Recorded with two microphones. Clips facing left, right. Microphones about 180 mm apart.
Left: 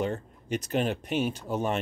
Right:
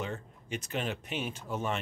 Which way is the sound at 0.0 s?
35° left (ahead or behind).